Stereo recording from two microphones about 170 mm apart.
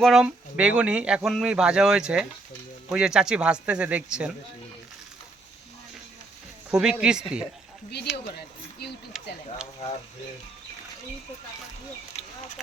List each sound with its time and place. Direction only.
0.0 s speech: centre (ahead or behind)
6.7 s speech: 5° right (ahead or behind)